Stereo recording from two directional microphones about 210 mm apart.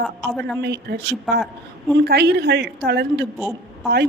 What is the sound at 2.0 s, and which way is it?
A woman's voice, 50° right (ahead or behind).